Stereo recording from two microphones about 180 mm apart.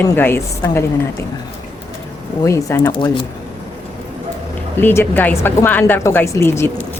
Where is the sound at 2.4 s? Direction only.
15° left (ahead or behind).